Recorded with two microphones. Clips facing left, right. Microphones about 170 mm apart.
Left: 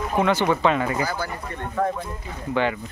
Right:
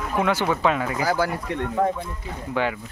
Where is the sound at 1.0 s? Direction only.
90° right.